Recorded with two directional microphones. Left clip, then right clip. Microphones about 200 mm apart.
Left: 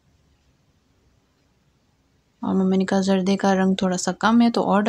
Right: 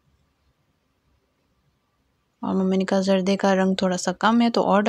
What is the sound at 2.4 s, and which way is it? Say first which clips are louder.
Speech: left 1 dB; 20° right (ahead or behind).